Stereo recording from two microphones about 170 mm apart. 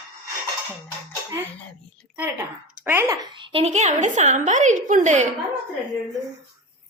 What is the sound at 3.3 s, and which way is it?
A woman's voice, 30° right (ahead or behind).